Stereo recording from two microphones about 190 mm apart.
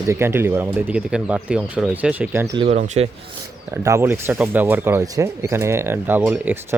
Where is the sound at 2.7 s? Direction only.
35° right (ahead or behind).